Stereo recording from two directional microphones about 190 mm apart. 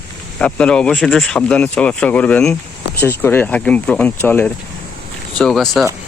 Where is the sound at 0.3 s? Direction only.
5° left (ahead or behind).